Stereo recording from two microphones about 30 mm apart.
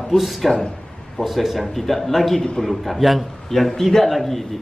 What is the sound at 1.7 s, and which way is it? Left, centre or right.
Speech, centre.